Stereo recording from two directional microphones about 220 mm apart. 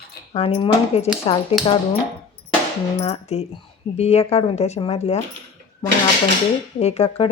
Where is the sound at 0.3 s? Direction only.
25° left (ahead or behind).